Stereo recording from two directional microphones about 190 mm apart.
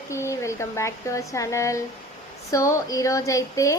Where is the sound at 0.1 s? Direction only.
15° left (ahead or behind).